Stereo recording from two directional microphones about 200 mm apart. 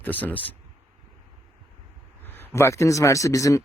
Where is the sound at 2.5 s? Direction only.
15° left (ahead or behind).